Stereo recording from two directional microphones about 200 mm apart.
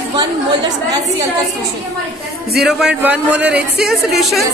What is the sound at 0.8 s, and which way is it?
Speech, 20° right (ahead or behind).